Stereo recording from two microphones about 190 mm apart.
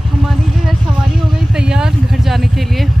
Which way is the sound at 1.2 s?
5° right (ahead or behind).